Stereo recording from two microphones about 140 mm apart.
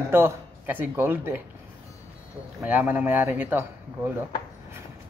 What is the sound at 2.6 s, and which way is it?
Speech, 10° right (ahead or behind).